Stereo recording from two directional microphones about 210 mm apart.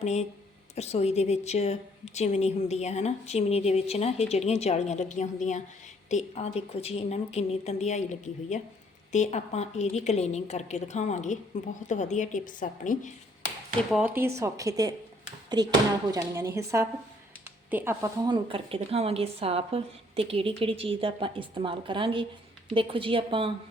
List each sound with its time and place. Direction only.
0.0 s a woman's voice: 30° left (ahead or behind)
13.9 s a woman's voice: 10° right (ahead or behind); by 23.5 s 25° right (ahead or behind)